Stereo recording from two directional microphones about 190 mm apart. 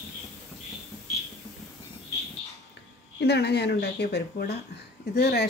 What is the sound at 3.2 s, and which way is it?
Speech, 60° left (ahead or behind).